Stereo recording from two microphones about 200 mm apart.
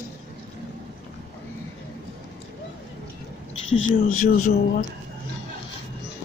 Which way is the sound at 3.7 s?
85° left.